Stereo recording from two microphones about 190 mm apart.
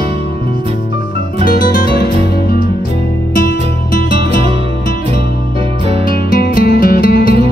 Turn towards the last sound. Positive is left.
turn(degrees=50)  # may be behind; listen again after turning